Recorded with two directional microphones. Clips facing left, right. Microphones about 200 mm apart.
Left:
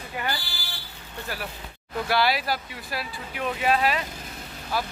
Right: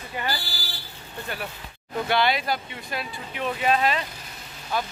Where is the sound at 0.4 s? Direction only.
40° right (ahead or behind).